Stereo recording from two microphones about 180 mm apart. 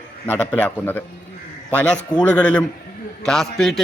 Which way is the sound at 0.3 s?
10° left (ahead or behind).